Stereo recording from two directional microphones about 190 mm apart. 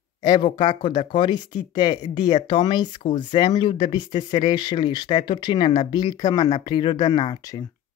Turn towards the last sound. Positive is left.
turn(degrees=20)  # may be behind; listen again after turning